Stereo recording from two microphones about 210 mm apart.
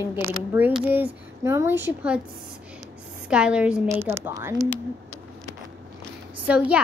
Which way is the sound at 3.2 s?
5° right (ahead or behind).